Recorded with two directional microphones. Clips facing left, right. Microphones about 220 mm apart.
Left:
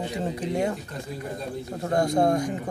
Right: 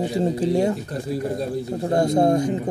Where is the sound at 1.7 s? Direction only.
25° right (ahead or behind).